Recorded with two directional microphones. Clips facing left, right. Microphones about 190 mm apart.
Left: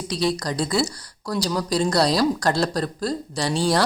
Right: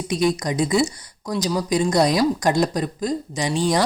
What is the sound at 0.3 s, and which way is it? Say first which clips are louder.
Speech: right 3 dB; 20° right (ahead or behind).